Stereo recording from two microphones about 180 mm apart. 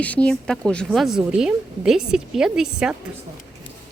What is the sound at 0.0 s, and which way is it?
A woman's voice, 5° left (ahead or behind).